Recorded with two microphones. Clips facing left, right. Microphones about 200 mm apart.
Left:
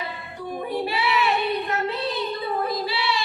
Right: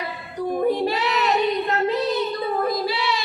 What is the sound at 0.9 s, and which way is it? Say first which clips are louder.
Child singing: right 1 dB; 40° right (ahead or behind).